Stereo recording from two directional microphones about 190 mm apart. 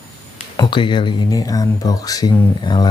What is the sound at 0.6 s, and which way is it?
Speech, 25° left (ahead or behind).